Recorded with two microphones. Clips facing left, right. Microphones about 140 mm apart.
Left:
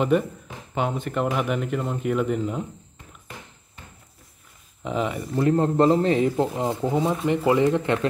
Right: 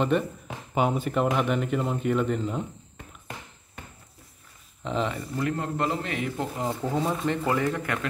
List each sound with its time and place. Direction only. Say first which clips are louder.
0.1 s speech: left 4 dB; 5° left (ahead or behind)
0.7 s speech: right 1 dB; 5° right (ahead or behind)
4.8 s speech: left 2 dB; 10° left (ahead or behind)
5.4 s speech: left 9 dB; 30° left (ahead or behind)